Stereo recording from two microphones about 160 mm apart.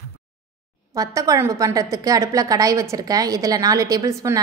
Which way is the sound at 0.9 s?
20° right (ahead or behind).